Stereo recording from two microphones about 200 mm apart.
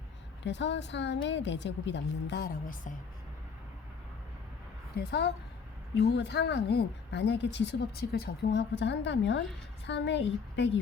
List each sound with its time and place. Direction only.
0.4 s speech: 60° left (ahead or behind); by 2.9 s 45° left (ahead or behind)
4.9 s speech: 55° left (ahead or behind)